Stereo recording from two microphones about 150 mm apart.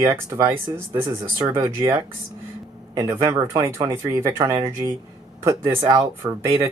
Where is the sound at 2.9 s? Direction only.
20° right (ahead or behind).